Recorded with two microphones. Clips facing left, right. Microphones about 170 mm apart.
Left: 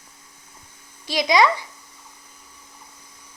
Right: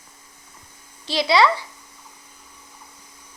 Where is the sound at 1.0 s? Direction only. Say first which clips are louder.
Even; 15° left (ahead or behind).